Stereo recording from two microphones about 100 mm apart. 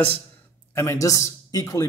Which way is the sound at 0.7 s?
25° left (ahead or behind).